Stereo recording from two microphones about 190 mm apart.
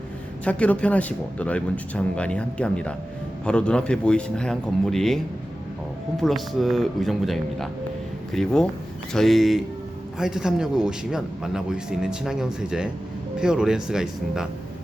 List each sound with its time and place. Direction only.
0.4 s speech: 5° left (ahead or behind)